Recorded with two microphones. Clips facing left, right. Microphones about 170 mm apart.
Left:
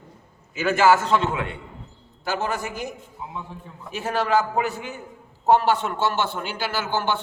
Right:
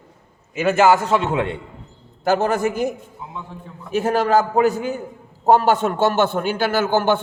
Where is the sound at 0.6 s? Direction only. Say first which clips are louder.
Right 3 dB; 20° right (ahead or behind).